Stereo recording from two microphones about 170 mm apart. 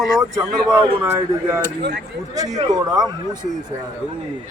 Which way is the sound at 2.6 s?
20° right (ahead or behind).